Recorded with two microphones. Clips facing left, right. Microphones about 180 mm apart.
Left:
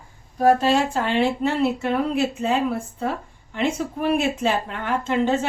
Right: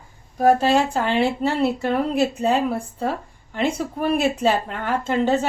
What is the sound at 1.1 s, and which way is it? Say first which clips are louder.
A woman's voice: even; 35° right (ahead or behind).